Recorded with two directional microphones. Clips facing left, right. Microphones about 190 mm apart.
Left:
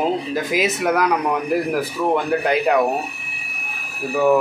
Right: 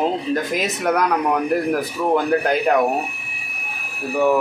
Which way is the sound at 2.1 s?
Centre (ahead or behind).